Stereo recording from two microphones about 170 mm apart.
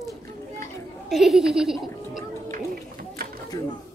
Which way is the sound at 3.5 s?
25° left (ahead or behind).